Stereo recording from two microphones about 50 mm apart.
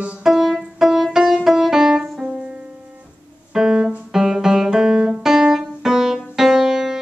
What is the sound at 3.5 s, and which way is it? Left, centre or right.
Piano, centre.